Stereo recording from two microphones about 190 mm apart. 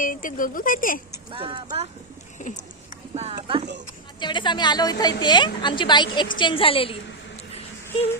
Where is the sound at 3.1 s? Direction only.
35° right (ahead or behind).